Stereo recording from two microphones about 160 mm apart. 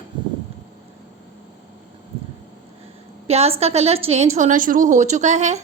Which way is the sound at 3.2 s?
40° right (ahead or behind).